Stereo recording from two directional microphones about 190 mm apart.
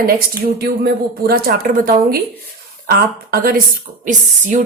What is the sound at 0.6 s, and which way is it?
Speech, 55° right (ahead or behind).